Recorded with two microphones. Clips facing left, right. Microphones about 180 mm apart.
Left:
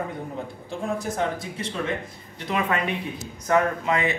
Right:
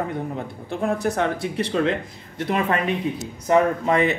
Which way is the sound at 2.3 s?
45° right (ahead or behind).